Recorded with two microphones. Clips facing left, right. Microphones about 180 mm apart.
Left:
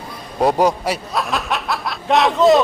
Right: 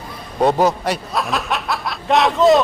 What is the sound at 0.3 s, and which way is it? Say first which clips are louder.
Speech: even; 10° left (ahead or behind).